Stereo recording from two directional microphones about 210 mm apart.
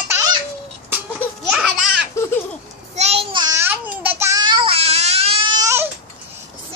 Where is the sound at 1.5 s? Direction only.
5° right (ahead or behind).